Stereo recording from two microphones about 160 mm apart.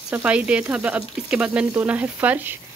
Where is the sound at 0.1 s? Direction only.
10° right (ahead or behind).